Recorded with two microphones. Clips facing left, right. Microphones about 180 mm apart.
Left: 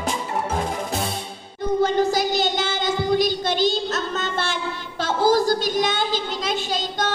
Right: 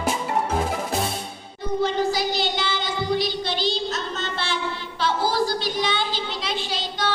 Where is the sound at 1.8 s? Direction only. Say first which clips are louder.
Left 1 dB; 50° left (ahead or behind).